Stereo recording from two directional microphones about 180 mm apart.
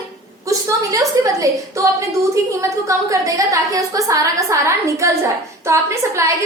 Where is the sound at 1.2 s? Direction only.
20° right (ahead or behind).